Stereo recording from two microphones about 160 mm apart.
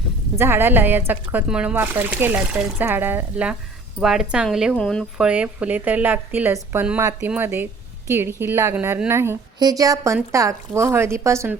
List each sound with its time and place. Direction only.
0.3 s speech: 15° right (ahead or behind)